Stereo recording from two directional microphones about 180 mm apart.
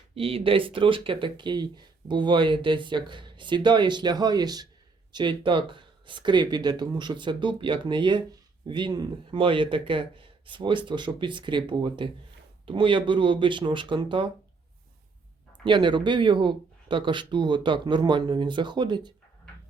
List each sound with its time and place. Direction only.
0.1 s speech: 30° right (ahead or behind)
15.6 s speech: 25° right (ahead or behind)